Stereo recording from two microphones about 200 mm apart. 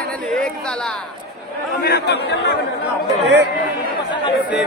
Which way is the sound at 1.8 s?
55° left (ahead or behind).